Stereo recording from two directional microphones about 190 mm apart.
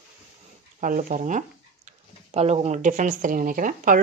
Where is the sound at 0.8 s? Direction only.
45° right (ahead or behind).